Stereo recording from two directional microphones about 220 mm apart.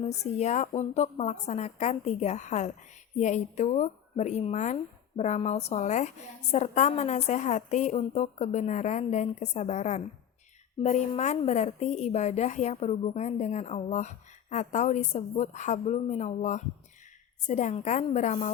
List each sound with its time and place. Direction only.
0.3 s speech: 30° left (ahead or behind)